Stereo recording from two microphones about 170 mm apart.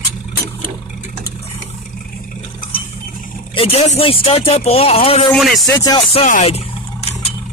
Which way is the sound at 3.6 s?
35° left (ahead or behind).